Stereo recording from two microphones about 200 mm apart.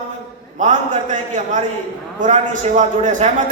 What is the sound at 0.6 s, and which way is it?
A man's voice, 40° right (ahead or behind).